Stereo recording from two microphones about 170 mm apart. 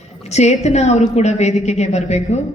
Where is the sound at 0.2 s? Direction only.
40° left (ahead or behind).